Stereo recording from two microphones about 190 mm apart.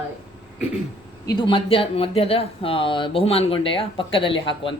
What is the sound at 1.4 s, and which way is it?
Speech, 25° left (ahead or behind).